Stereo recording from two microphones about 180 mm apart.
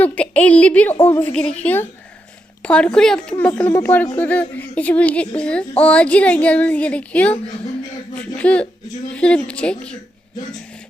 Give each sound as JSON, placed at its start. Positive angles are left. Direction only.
{"t": 0.0, "sound": "speech", "side_deg": 10}
{"t": 8.4, "sound": "speech", "side_deg": 5}